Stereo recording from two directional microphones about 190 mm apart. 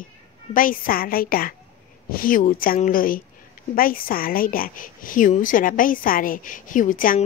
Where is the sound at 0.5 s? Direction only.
45° left (ahead or behind).